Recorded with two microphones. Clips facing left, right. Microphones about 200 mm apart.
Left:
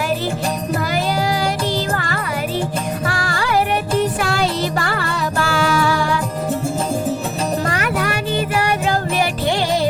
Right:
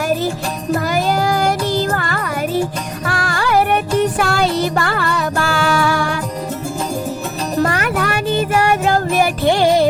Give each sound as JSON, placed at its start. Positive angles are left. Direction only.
{"t": 0.9, "sound": "music", "side_deg": -50}
{"t": 7.7, "sound": "music", "side_deg": -50}